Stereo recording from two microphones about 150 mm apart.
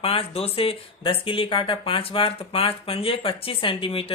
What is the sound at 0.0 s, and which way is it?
Speech, 40° left (ahead or behind).